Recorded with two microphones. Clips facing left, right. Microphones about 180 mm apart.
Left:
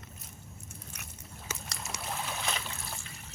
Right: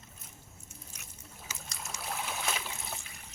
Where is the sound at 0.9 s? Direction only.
60° left (ahead or behind).